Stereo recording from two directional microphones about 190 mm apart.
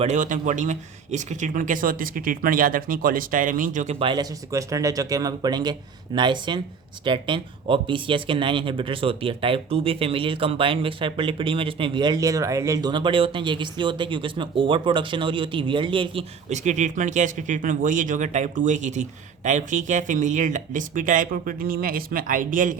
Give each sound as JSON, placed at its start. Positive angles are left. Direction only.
{"t": 0.0, "sound": "speech", "side_deg": -40}
{"t": 4.0, "sound": "speech", "side_deg": -20}